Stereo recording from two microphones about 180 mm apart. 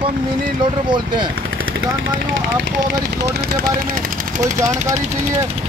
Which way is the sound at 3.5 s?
55° right (ahead or behind).